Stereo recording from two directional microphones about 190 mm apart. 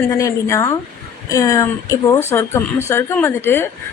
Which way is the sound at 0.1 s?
15° left (ahead or behind).